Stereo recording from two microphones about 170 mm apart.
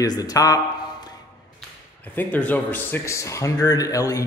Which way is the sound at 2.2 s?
10° left (ahead or behind).